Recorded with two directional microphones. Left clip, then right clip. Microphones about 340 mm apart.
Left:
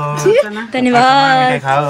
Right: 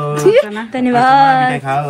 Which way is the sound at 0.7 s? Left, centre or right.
Centre.